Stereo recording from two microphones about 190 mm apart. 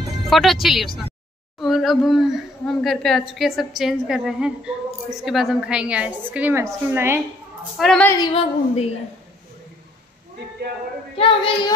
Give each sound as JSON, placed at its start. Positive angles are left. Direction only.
{"t": 0.3, "sound": "speech", "side_deg": 0}
{"t": 7.7, "sound": "speech", "side_deg": 0}
{"t": 8.3, "sound": "a woman's voice", "side_deg": 30}
{"t": 11.1, "sound": "child singing", "side_deg": 30}